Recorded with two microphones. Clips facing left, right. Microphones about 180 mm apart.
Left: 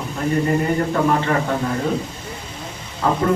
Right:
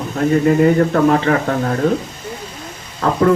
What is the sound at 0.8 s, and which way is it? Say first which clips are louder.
Speech: right 5 dB; 65° right (ahead or behind).